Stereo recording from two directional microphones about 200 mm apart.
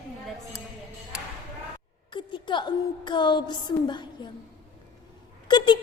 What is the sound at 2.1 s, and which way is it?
Music, 25° left (ahead or behind).